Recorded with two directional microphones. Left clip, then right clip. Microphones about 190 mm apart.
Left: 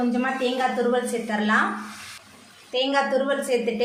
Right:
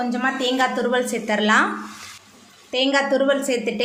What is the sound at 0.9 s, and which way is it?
Speech, 50° right (ahead or behind).